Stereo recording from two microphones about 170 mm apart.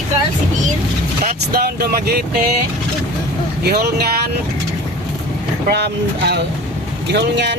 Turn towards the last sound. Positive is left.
turn(degrees=-90)